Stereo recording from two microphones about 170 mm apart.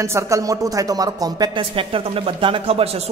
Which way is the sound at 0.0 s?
15° right (ahead or behind).